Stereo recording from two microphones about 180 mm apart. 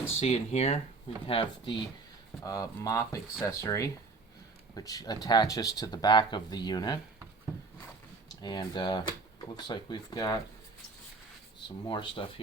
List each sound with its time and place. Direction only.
0.2 s speech: 35° left (ahead or behind)
8.4 s speech: 25° left (ahead or behind)
11.9 s speech: 30° left (ahead or behind)